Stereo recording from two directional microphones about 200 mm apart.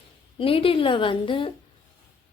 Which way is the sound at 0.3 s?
25° left (ahead or behind).